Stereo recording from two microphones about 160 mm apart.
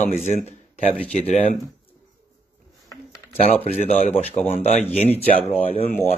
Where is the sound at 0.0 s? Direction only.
45° left (ahead or behind).